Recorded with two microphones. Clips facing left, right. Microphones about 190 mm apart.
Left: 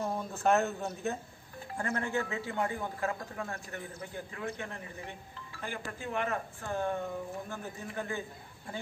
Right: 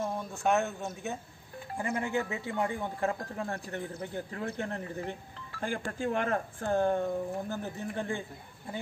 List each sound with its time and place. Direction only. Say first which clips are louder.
0.0 s speech: even; centre (ahead or behind)
1.8 s speech: right 2 dB; 10° right (ahead or behind); by 7.0 s 45° right (ahead or behind)
7.4 s speech: right 5 dB; 30° right (ahead or behind)